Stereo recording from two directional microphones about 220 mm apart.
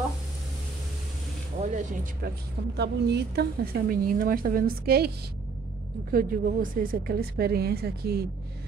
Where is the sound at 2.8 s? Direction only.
50° right (ahead or behind).